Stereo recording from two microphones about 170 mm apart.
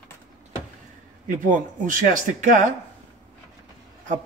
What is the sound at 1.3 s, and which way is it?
Speech, 50° right (ahead or behind).